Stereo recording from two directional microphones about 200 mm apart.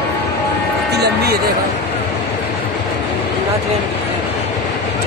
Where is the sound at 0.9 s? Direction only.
55° right (ahead or behind).